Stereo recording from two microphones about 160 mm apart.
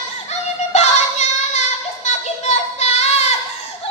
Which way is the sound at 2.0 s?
45° left (ahead or behind).